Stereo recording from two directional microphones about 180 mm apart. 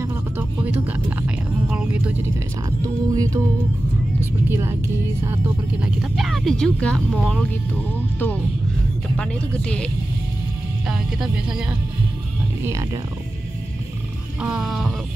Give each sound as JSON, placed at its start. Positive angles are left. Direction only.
{"t": 0.0, "sound": "music", "side_deg": -15}
{"t": 3.1, "sound": "music", "side_deg": -20}
{"t": 4.5, "sound": "speech", "side_deg": -15}
{"t": 5.8, "sound": "speech", "side_deg": -5}
{"t": 10.9, "sound": "speech", "side_deg": -5}
{"t": 12.6, "sound": "speech", "side_deg": -15}
{"t": 14.4, "sound": "speech", "side_deg": -5}